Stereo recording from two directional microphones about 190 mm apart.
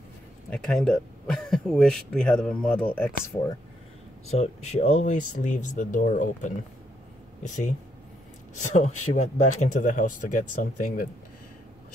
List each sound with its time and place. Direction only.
0.5 s speech: centre (ahead or behind)
4.3 s speech: 35° left (ahead or behind)
8.7 s speech: 40° left (ahead or behind)